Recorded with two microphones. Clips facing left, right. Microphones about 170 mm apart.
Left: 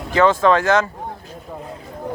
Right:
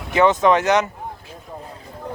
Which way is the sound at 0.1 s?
20° right (ahead or behind).